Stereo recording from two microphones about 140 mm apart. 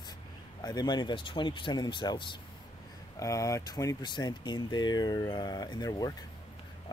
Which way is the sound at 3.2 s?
25° left (ahead or behind).